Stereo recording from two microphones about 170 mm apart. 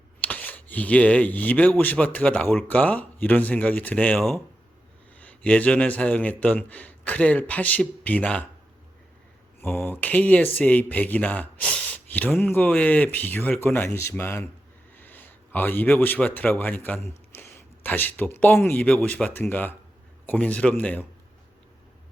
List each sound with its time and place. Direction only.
0.2 s speech: 10° left (ahead or behind)
9.6 s a man's voice: 5° left (ahead or behind)